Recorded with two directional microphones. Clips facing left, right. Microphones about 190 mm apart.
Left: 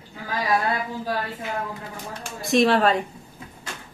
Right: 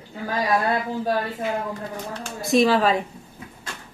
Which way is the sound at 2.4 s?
Centre (ahead or behind).